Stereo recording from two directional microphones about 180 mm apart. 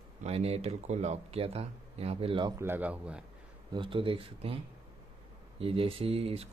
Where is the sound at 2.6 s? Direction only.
10° right (ahead or behind).